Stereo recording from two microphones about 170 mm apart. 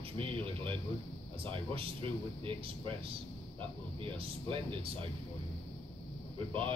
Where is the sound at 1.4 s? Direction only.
30° right (ahead or behind).